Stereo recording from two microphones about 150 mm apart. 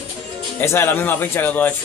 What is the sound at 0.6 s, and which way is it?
A man's voice, 15° left (ahead or behind).